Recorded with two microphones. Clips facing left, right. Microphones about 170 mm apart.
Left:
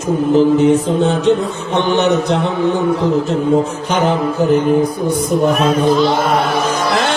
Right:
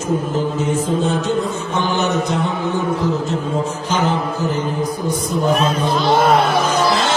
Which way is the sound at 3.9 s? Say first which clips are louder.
Left 3 dB; 65° left (ahead or behind).